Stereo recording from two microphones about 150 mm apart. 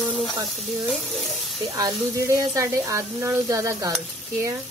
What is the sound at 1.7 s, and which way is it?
Speech, 25° right (ahead or behind).